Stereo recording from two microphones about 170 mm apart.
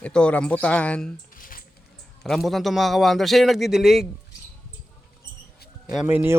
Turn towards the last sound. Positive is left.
turn(degrees=-15)  # may be behind; listen again after turning